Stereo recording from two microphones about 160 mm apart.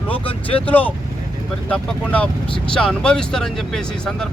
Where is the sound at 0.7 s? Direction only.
10° left (ahead or behind).